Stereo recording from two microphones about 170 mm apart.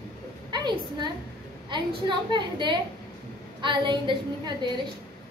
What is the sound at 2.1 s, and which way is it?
A woman's voice, 30° right (ahead or behind).